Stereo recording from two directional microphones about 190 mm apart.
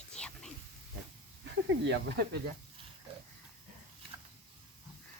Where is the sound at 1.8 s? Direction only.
65° right (ahead or behind).